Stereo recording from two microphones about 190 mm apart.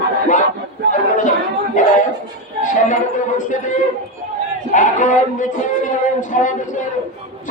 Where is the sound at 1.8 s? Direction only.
40° left (ahead or behind).